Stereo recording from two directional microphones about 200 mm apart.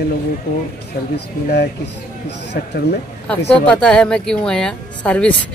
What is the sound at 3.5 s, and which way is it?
Speech, 5° left (ahead or behind).